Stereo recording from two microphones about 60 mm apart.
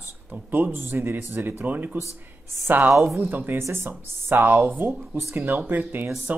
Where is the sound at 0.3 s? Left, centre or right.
Right.